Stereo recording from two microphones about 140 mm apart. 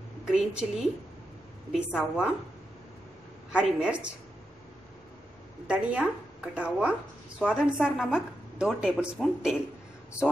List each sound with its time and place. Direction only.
0.3 s a woman's voice: centre (ahead or behind)
3.5 s speech: 10° right (ahead or behind)
5.7 s a woman's voice: 10° right (ahead or behind)